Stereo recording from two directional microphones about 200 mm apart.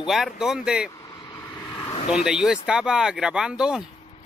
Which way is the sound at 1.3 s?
20° left (ahead or behind).